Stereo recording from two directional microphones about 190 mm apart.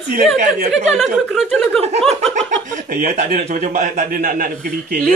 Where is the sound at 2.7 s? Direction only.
45° right (ahead or behind).